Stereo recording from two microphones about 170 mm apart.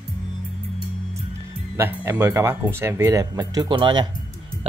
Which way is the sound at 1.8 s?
15° right (ahead or behind).